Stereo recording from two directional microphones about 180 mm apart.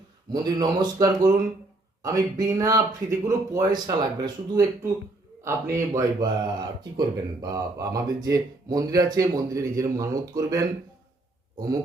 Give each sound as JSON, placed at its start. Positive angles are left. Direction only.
{"t": 0.4, "sound": "speech", "side_deg": -20}